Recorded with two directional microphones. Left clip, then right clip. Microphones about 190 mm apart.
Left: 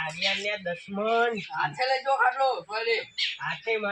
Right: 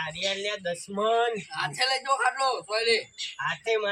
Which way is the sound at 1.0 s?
30° right (ahead or behind).